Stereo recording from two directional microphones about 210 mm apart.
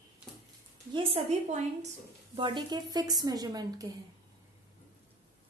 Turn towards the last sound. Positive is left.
turn(degrees=-15)  # may be behind; listen again after turning